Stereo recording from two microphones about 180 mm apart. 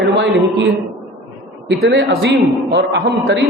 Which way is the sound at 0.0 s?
80° right.